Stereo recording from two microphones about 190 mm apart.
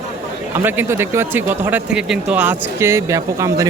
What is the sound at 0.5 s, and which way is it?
Speech, 10° right (ahead or behind).